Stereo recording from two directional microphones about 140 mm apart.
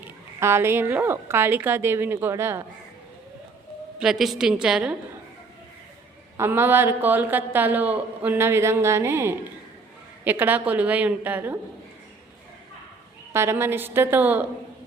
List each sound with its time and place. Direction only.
0.3 s a woman's voice: 15° right (ahead or behind)
4.0 s a woman's voice: 5° right (ahead or behind)
6.3 s a woman's voice: 15° right (ahead or behind)
13.3 s a woman's voice: 20° right (ahead or behind)